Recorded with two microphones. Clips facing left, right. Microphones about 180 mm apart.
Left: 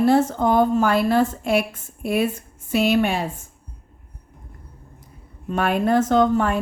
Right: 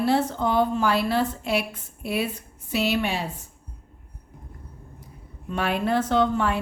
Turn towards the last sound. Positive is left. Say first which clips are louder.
# left 4 dB
turn(degrees=45)  # may be behind; listen again after turning